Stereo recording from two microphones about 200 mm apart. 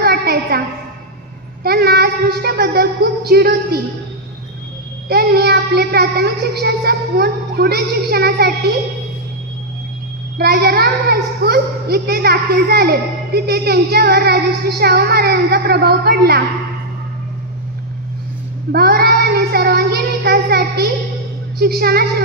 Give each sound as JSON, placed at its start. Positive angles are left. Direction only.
{"t": 0.0, "sound": "a sound", "side_deg": -50}
{"t": 1.6, "sound": "child singing", "side_deg": -50}
{"t": 5.0, "sound": "a child's voice", "side_deg": -50}
{"t": 10.3, "sound": "a child's voice", "side_deg": -50}
{"t": 18.7, "sound": "child singing", "side_deg": -50}
{"t": 21.5, "sound": "a child's voice", "side_deg": -50}